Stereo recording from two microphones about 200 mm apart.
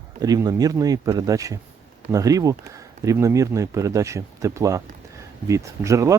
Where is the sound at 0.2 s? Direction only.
20° right (ahead or behind).